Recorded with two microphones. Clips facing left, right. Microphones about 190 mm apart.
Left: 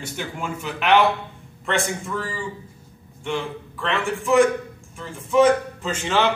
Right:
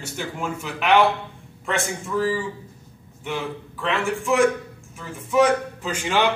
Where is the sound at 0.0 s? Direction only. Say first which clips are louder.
Right 1 dB; 5° right (ahead or behind).